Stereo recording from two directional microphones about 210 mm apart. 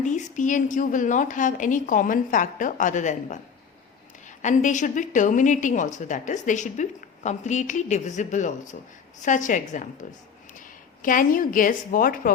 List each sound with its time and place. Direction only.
0.0 s speech: 35° left (ahead or behind)
4.4 s speech: 35° left (ahead or behind)
11.0 s speech: 40° left (ahead or behind)